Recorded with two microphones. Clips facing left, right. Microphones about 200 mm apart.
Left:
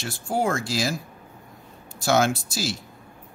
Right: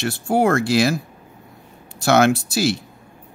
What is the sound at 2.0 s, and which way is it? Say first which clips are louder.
Speech: right 6 dB; 65° right (ahead or behind).